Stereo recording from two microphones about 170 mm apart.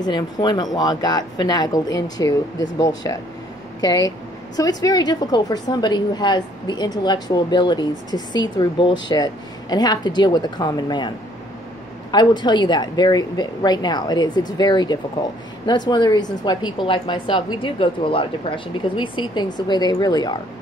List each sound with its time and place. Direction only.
0.0 s a woman's voice: 25° left (ahead or behind)